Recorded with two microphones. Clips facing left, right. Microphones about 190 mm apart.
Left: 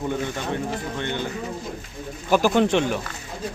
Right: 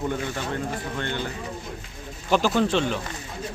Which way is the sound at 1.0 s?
15° left (ahead or behind).